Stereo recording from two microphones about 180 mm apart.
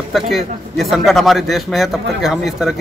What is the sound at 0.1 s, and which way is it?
Speech, centre (ahead or behind).